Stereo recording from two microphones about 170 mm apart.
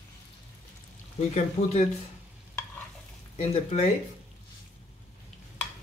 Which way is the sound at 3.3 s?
40° left (ahead or behind).